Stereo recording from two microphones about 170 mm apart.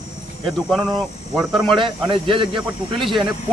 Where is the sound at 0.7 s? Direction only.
Centre (ahead or behind).